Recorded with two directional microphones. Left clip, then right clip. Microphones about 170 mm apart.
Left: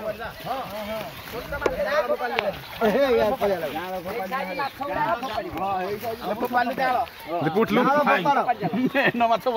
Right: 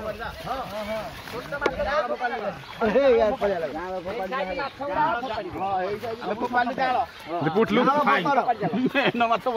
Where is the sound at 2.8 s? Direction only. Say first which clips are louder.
Right 1 dB; 70° left (ahead or behind); by 7.0 s 30° left (ahead or behind).